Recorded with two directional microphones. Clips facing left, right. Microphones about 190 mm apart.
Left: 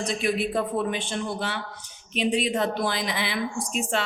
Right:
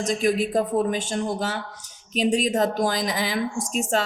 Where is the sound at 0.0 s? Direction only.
40° right (ahead or behind).